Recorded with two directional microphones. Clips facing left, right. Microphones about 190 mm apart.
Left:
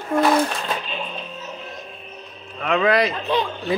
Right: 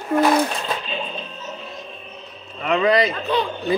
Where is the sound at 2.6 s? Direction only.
Centre (ahead or behind).